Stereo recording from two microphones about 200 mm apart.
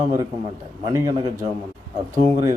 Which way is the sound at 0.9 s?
20° right (ahead or behind).